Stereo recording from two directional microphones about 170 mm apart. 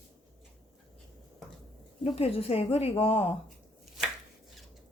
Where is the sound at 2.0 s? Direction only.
35° left (ahead or behind).